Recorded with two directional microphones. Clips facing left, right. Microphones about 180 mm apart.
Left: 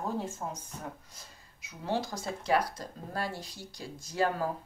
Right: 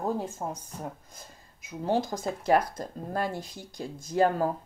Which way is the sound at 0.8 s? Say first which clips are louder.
Right 4 dB; 50° right (ahead or behind).